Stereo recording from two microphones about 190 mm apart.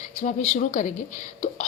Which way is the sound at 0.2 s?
40° left (ahead or behind).